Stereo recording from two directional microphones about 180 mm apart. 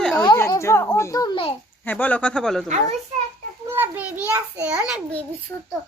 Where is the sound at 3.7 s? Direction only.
15° right (ahead or behind).